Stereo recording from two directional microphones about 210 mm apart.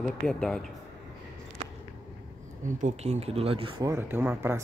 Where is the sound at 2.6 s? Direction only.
35° right (ahead or behind).